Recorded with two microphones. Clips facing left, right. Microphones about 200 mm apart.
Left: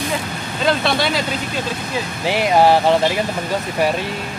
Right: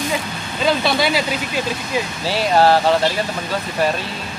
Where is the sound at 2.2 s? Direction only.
15° left (ahead or behind).